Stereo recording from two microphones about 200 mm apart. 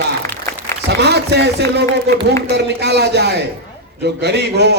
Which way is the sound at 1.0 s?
55° right (ahead or behind).